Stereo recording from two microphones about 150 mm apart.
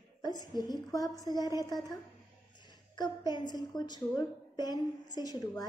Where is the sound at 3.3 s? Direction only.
30° left (ahead or behind).